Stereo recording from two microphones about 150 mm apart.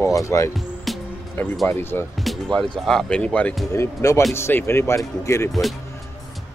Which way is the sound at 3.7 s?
20° left (ahead or behind).